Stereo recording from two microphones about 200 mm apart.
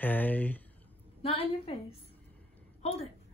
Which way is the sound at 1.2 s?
30° left (ahead or behind).